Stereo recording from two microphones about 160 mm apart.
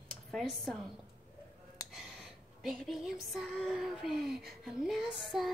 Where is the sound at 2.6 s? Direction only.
Centre (ahead or behind).